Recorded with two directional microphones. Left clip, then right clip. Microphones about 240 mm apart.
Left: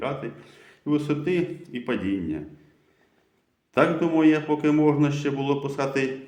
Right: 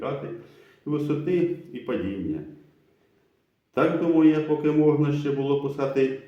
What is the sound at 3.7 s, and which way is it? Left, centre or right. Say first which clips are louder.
Speech: left 1 dB; left.